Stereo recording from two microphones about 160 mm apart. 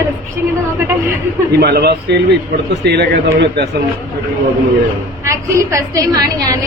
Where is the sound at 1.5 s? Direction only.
80° right.